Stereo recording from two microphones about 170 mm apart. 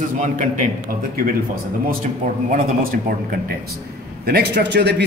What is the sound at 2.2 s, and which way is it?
Speech, 50° right (ahead or behind).